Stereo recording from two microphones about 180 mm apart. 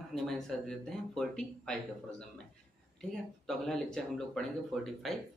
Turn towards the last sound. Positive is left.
turn(degrees=0)  # may be behind; listen again after turning